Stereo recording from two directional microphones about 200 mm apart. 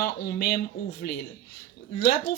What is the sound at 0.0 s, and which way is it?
Speech, 50° left (ahead or behind).